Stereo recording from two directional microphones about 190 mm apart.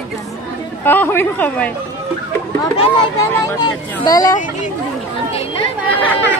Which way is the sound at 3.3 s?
15° left (ahead or behind).